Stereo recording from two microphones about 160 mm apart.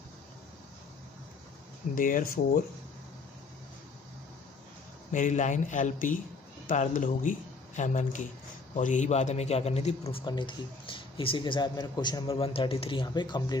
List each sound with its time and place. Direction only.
2.0 s speech: 60° left (ahead or behind)
5.1 s a man's voice: 50° left (ahead or behind)
10.2 s speech: 30° left (ahead or behind)